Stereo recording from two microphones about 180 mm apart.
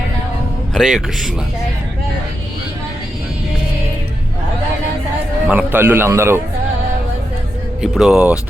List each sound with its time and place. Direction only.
0.7 s speech: centre (ahead or behind)
5.5 s a man's voice: 10° right (ahead or behind)
7.8 s speech: 5° right (ahead or behind)